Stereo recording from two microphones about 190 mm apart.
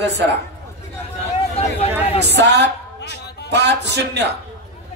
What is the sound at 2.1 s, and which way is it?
A man's voice, 60° right (ahead or behind).